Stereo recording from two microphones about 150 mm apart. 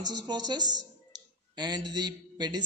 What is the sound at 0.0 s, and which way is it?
A man's voice, 30° right (ahead or behind).